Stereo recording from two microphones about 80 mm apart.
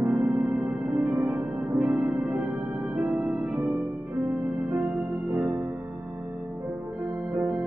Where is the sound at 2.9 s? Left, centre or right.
Centre.